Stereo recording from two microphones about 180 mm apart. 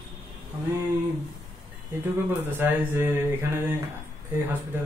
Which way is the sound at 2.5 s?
10° right (ahead or behind).